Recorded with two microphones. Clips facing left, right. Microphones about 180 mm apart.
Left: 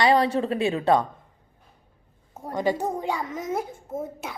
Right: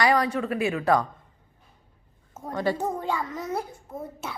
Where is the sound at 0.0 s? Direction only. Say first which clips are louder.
Left 3 dB; 30° left (ahead or behind).